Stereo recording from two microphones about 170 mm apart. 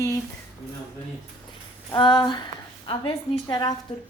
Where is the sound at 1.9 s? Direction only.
25° left (ahead or behind).